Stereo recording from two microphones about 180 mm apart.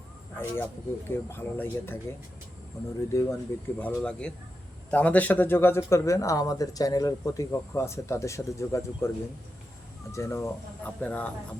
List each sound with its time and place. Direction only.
0.3 s speech: 10° left (ahead or behind)
3.1 s speech: 15° left (ahead or behind)
10.1 s speech: 15° left (ahead or behind)